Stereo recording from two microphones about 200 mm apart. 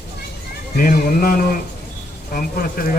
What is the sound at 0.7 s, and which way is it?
Speech, 45° left (ahead or behind).